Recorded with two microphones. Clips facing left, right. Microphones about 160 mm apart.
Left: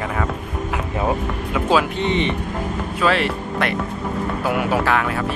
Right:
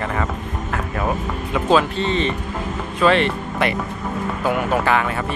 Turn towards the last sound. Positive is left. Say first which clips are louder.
# even
turn(degrees=0)  # may be behind; listen again after turning